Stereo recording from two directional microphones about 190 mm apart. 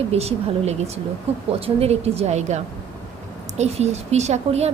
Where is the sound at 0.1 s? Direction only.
35° right (ahead or behind).